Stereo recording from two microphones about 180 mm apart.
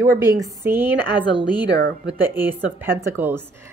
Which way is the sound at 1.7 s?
75° right (ahead or behind).